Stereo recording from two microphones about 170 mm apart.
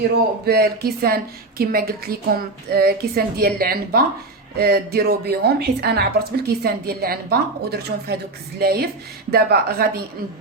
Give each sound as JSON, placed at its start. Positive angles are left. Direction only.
{"t": 0.4, "sound": "a woman's voice", "side_deg": -65}